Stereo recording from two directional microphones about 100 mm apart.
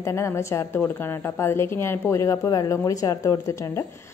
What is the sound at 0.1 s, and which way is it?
A woman's voice, 30° left (ahead or behind).